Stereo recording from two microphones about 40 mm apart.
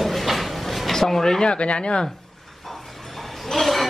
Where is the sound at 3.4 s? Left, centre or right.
Centre.